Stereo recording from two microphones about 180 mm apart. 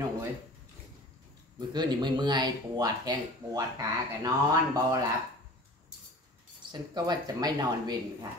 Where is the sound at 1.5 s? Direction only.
25° right (ahead or behind).